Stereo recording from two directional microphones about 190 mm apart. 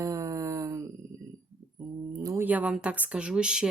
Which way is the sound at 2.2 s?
15° right (ahead or behind).